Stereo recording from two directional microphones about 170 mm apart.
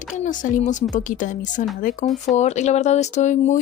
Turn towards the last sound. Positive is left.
turn(degrees=45)  # may be behind; listen again after turning